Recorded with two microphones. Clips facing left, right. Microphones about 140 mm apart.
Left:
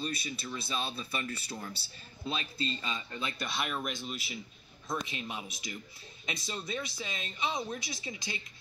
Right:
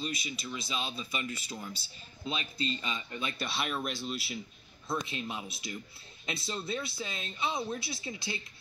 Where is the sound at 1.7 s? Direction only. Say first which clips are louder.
Even; 10° left (ahead or behind).